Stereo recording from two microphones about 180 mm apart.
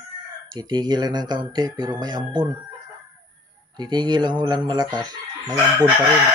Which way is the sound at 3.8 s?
25° right (ahead or behind).